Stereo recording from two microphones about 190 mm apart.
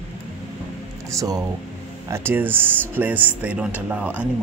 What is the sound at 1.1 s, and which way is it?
Speech, 15° right (ahead or behind).